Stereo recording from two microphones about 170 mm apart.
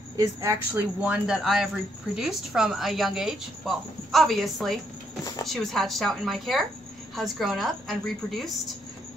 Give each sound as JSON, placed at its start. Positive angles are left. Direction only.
{"t": 0.2, "sound": "a woman's voice", "side_deg": -15}
{"t": 1.0, "sound": "a woman's voice", "side_deg": -5}